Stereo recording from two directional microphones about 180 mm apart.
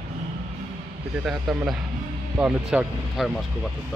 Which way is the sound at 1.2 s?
5° right (ahead or behind).